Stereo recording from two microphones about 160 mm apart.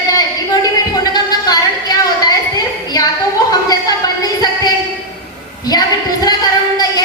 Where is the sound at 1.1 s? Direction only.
25° left (ahead or behind).